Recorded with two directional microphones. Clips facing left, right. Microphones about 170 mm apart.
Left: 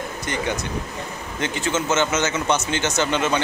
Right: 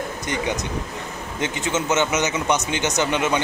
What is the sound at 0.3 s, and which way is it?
Speech, 20° right (ahead or behind).